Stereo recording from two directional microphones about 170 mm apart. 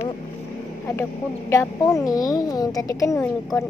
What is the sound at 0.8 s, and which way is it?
A child's voice, 15° left (ahead or behind).